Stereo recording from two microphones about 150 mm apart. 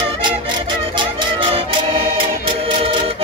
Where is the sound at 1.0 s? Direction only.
35° right (ahead or behind).